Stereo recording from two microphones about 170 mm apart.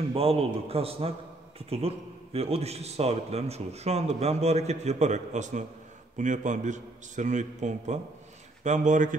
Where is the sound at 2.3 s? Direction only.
35° right (ahead or behind).